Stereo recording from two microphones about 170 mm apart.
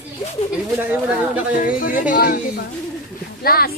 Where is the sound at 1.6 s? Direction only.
55° left (ahead or behind).